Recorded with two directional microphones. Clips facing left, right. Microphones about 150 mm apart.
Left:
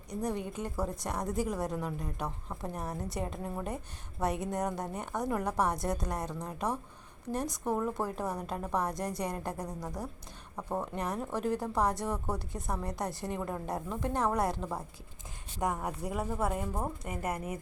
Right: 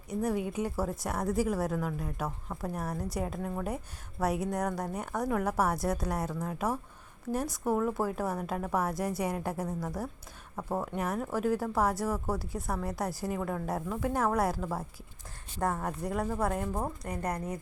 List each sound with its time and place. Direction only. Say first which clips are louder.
0.1 s a woman's voice: right 4 dB; 5° right (ahead or behind)
2.8 s a woman's voice: right 2 dB; 20° left (ahead or behind)
3.1 s a woman's voice: right 2 dB; centre (ahead or behind)
9.6 s a woman's voice: right 4 dB; 15° left (ahead or behind)
10.6 s a woman's voice: right 2 dB; 5° right (ahead or behind)
15.5 s a woman's voice: right 1 dB; 15° left (ahead or behind)